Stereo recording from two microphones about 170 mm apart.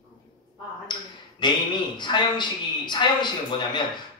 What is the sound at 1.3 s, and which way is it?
A woman's voice, 25° left (ahead or behind).